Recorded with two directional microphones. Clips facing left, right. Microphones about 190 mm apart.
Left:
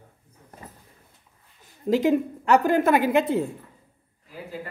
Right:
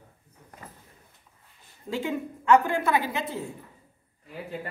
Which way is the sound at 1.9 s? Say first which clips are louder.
Left 9 dB; 40° left (ahead or behind).